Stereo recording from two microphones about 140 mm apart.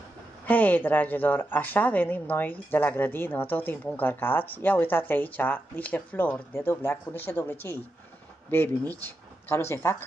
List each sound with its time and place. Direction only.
0.5 s speech: 10° left (ahead or behind)